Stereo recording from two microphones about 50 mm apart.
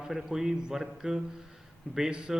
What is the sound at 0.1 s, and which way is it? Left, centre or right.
A man's voice, centre.